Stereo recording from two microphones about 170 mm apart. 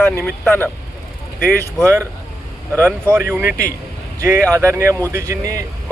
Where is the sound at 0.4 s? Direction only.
10° left (ahead or behind).